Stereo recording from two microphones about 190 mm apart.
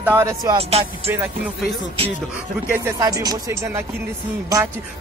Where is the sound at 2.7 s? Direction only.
15° right (ahead or behind).